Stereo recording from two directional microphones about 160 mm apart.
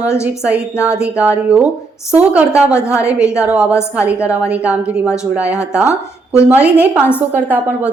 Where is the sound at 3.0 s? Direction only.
5° right (ahead or behind).